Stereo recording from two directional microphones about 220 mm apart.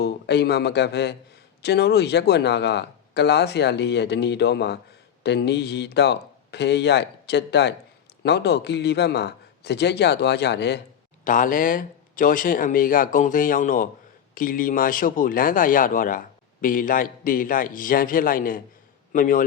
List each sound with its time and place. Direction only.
0.0 s speech: 45° left (ahead or behind)
11.3 s speech: 40° left (ahead or behind)